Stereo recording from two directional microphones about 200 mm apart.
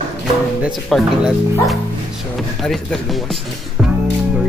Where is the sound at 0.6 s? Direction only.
Centre (ahead or behind).